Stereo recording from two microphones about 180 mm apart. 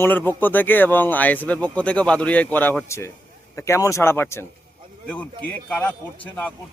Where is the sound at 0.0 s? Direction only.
10° left (ahead or behind).